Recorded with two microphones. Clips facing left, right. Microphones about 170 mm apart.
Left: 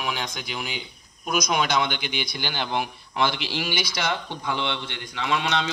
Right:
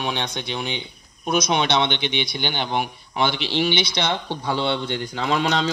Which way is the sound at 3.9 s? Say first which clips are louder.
Right 3 dB; 30° right (ahead or behind).